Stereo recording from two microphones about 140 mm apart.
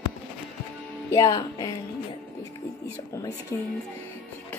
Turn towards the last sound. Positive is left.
turn(degrees=20)  # may be behind; listen again after turning